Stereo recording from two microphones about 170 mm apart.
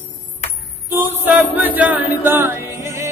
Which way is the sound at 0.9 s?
10° right (ahead or behind).